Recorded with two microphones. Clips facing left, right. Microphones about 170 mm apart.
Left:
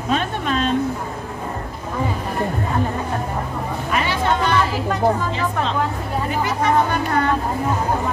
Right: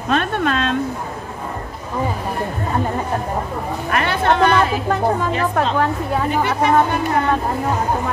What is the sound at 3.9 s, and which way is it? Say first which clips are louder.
A woman's voice: right 3 dB; 60° right (ahead or behind).